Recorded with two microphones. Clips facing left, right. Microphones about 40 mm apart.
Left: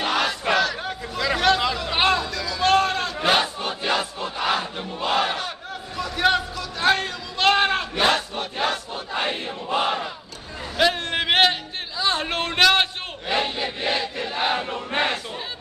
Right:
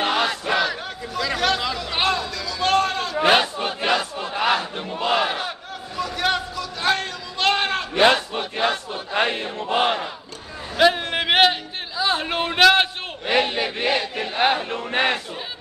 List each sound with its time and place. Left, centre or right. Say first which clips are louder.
0.0 s battle cry: right 2 dB; right
0.3 s battle cry: even; centre
0.8 s a sound: left 1 dB; centre
3.3 s battle cry: right 3 dB; right
5.2 s battle cry: right 1 dB; centre
5.9 s a sound: left 2 dB; centre
7.9 s battle cry: right 8 dB; right
8.4 s battle cry: right 2 dB; centre
9.1 s a sound: right 4 dB; right
9.6 s battle cry: right 3 dB; right
10.8 s a sound: right 3 dB; centre
13.7 s chant: right 2 dB; right
14.7 s battle cry: right 2 dB; right